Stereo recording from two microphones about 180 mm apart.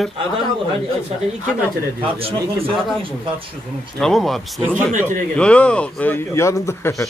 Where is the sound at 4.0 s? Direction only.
Centre (ahead or behind).